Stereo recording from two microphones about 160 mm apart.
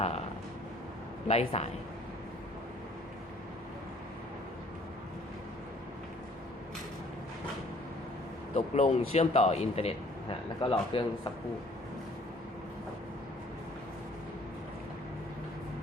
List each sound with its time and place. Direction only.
1.3 s speech: 40° left (ahead or behind)
8.5 s speech: 40° left (ahead or behind)